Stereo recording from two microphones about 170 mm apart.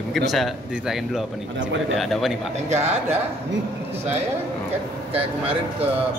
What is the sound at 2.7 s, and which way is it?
Speech, 40° right (ahead or behind).